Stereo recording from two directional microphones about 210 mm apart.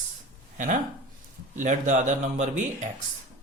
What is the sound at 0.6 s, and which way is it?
Speech, 40° right (ahead or behind).